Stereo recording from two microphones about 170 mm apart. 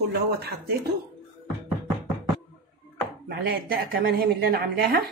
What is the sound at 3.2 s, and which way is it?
A woman's voice, 65° right (ahead or behind).